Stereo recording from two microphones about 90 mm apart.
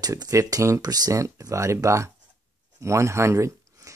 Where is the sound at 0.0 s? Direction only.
45° right (ahead or behind).